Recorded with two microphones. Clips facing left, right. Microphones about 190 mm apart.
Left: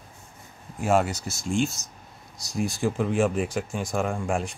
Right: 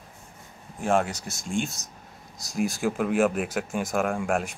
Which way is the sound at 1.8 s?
40° right (ahead or behind).